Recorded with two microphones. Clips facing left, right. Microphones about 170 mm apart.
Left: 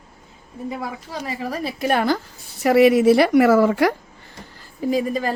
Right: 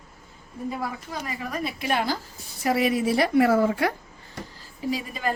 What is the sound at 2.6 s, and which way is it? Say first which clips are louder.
Speech: left 9 dB; 75° left (ahead or behind).